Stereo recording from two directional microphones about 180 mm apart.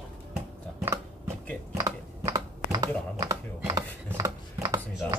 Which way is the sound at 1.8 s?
20° right (ahead or behind).